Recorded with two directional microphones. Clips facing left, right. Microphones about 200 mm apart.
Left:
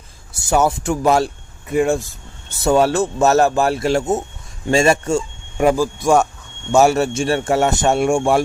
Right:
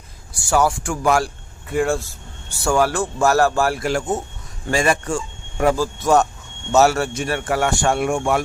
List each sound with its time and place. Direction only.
0.3 s a man's voice: 20° left (ahead or behind)